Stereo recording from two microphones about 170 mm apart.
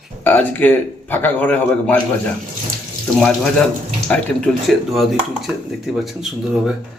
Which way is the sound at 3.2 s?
Centre (ahead or behind).